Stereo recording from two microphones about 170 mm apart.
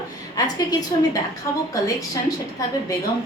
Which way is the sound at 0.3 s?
20° left (ahead or behind).